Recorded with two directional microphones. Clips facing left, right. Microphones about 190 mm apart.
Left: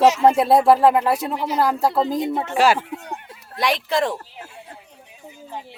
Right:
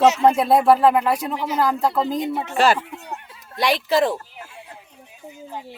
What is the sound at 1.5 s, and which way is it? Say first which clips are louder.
Speech: left 1 dB; 35° left (ahead or behind).